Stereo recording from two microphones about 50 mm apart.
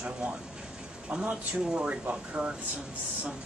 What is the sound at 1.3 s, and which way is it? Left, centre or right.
Speech, centre.